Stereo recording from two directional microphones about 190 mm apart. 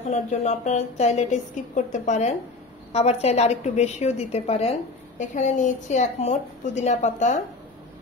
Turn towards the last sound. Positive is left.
turn(degrees=40)  # may be behind; listen again after turning